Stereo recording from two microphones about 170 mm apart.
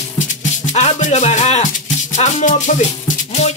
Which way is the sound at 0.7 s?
40° left (ahead or behind).